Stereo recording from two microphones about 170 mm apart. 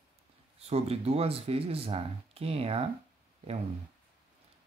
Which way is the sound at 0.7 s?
35° right (ahead or behind).